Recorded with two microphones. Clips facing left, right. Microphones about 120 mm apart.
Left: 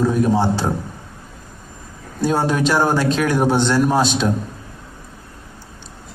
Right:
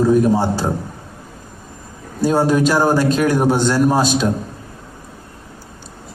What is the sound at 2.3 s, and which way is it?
A man's voice, 10° right (ahead or behind).